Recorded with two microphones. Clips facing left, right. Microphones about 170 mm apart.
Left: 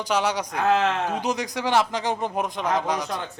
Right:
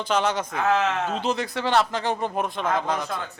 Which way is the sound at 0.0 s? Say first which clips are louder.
Even; 10° left (ahead or behind).